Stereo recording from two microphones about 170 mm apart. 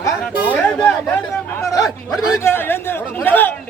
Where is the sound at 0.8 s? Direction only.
5° left (ahead or behind).